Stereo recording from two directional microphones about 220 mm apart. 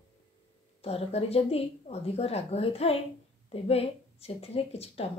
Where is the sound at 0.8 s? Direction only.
25° left (ahead or behind).